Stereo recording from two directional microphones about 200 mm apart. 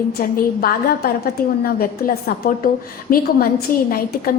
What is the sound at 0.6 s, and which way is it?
A woman's voice, 50° left (ahead or behind).